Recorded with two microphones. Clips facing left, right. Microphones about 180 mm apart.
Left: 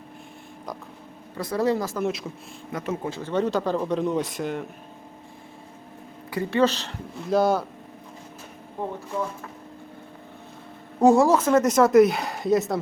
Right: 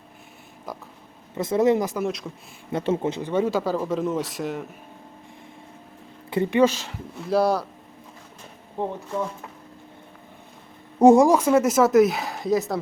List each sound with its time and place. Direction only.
1.4 s speech: 20° right (ahead or behind)
2.0 s speech: centre (ahead or behind)
2.7 s speech: 25° right (ahead or behind); by 4.6 s centre (ahead or behind)
6.3 s speech: 25° right (ahead or behind)
6.6 s speech: 10° right (ahead or behind)
8.8 s speech: 25° right (ahead or behind)
11.0 s speech: 20° right (ahead or behind); by 12.8 s centre (ahead or behind)